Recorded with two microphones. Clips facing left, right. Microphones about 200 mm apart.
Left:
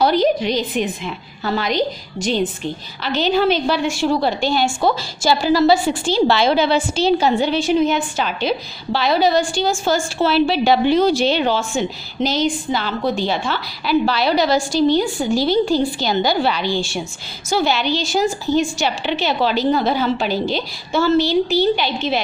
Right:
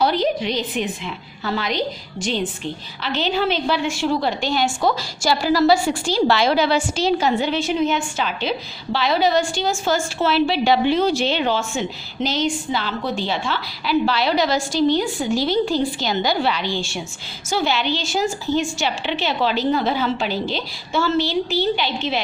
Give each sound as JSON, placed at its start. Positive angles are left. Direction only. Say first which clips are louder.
{"t": 0.0, "sound": "a woman's voice", "louder": "left 4 dB", "side_deg": 45}
{"t": 3.0, "sound": "a woman's voice", "louder": "left 4 dB", "side_deg": 40}